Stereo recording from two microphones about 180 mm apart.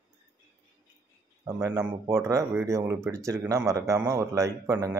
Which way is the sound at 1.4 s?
15° right (ahead or behind).